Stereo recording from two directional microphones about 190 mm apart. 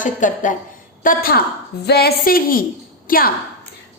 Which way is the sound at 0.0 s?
40° left (ahead or behind).